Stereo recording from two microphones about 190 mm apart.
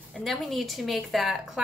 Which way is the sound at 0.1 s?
Centre (ahead or behind).